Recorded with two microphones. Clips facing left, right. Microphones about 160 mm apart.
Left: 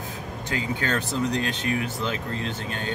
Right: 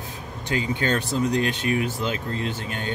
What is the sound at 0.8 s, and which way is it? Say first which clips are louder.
Speech: right 2 dB; 20° right (ahead or behind).